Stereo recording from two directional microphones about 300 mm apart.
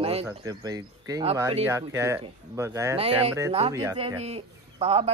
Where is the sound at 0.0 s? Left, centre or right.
Centre.